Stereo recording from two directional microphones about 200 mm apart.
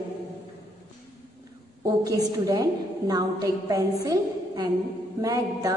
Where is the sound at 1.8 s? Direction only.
20° right (ahead or behind).